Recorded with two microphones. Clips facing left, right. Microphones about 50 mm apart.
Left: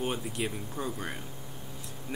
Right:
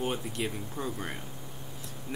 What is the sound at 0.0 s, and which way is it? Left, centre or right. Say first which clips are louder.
Speech: even; centre.